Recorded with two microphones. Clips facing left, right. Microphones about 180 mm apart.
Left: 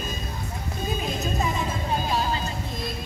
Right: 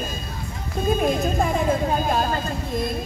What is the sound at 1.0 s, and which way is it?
Music, 55° right (ahead or behind).